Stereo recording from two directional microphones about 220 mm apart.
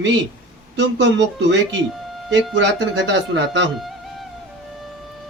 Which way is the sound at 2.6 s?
55° right (ahead or behind).